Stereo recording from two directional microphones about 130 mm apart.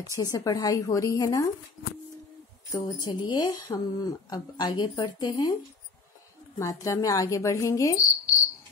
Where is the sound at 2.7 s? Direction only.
35° left (ahead or behind).